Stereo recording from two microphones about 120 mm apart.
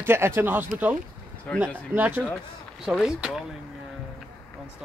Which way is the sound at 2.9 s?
5° right (ahead or behind).